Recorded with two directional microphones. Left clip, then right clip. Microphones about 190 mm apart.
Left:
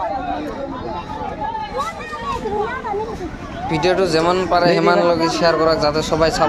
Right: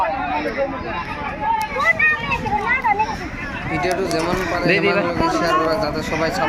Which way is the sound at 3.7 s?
20° left (ahead or behind).